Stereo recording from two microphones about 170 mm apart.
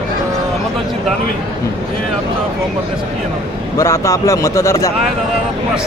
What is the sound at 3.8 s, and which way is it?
Speech, 20° left (ahead or behind).